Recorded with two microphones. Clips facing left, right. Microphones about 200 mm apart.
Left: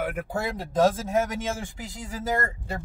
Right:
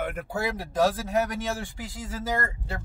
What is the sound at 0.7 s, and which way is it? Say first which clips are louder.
Speech: left 3 dB; 25° left (ahead or behind).